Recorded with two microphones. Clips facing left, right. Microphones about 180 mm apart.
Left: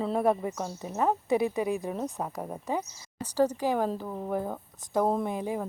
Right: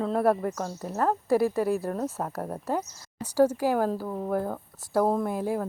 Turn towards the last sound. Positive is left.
turn(degrees=-5)  # may be behind; listen again after turning